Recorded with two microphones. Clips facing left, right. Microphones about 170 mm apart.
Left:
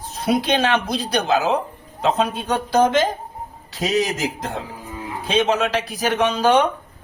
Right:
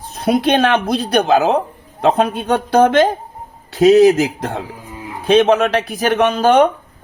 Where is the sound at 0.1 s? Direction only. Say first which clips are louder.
Right 5 dB; 55° right (ahead or behind).